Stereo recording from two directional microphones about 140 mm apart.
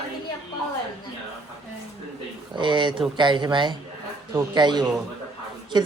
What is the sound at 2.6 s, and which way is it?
Speech, 35° right (ahead or behind).